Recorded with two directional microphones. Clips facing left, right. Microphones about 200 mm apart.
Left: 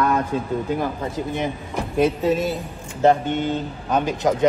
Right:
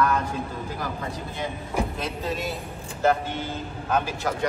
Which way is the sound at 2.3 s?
Centre (ahead or behind).